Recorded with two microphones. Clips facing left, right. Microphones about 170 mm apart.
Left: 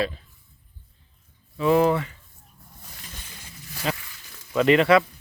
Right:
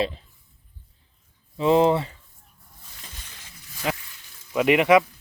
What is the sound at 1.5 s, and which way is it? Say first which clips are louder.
Speech: right 1 dB; 25° right (ahead or behind).